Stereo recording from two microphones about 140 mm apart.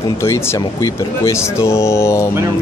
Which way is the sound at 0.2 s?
20° left (ahead or behind).